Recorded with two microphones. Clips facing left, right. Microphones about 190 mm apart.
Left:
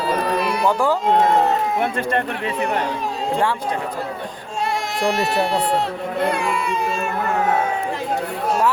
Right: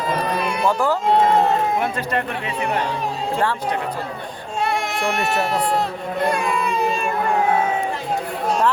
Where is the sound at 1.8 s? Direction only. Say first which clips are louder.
Left 2 dB; 50° left (ahead or behind).